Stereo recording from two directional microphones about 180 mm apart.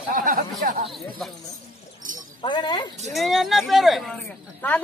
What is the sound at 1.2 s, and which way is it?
Speech, centre (ahead or behind).